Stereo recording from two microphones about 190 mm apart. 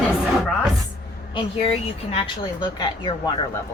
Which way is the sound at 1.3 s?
30° left (ahead or behind).